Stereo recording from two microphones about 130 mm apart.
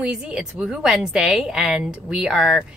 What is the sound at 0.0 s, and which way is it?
A woman's voice, 5° right (ahead or behind).